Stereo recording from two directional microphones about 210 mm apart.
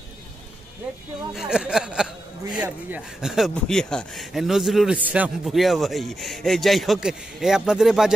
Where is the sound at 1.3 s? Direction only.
5° right (ahead or behind).